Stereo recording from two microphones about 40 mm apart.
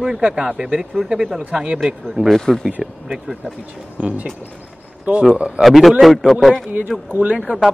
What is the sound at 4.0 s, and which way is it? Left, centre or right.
A man's voice, right.